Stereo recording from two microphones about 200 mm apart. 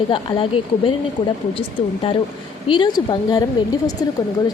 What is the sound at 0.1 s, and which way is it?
Speech, 25° left (ahead or behind).